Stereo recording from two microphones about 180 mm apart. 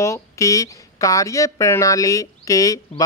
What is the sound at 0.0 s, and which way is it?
Speech, 15° left (ahead or behind).